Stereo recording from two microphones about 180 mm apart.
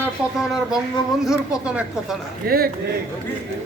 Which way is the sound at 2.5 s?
55° right (ahead or behind).